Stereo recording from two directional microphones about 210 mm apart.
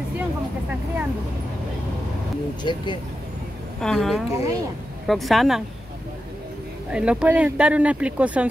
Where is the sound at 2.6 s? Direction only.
20° left (ahead or behind).